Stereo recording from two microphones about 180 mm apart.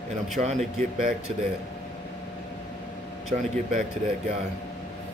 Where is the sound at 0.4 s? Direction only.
40° right (ahead or behind).